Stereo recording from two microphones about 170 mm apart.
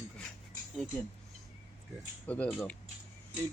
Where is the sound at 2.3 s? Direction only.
5° left (ahead or behind).